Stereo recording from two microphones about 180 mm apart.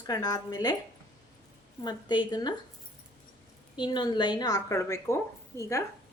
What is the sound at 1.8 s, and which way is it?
Speech, 25° left (ahead or behind).